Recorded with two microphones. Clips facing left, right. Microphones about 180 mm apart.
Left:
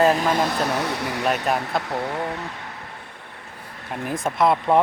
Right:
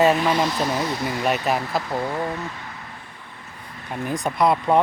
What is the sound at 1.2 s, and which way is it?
Speech, 5° right (ahead or behind).